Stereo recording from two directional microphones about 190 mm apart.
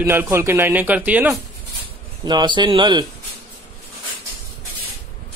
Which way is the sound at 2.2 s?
25° right (ahead or behind).